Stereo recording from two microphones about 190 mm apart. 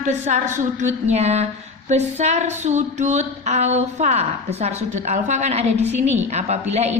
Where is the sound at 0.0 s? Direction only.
40° right (ahead or behind).